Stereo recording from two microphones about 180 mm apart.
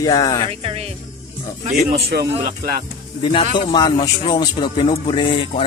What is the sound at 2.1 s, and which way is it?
Speech, 55° right (ahead or behind).